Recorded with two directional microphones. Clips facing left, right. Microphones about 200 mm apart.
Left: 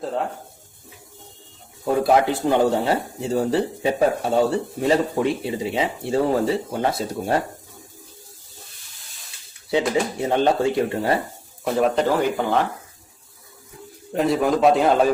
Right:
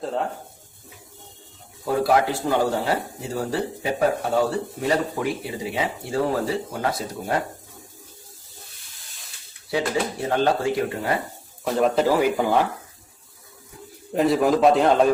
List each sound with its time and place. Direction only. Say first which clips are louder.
0.0 s speech: left 1 dB; centre (ahead or behind)
1.8 s speech: left 2 dB; 25° left (ahead or behind)
9.6 s speech: left 3 dB; 20° left (ahead or behind)
11.6 s speech: even; 5° left (ahead or behind)
14.1 s speech: right 1 dB; centre (ahead or behind)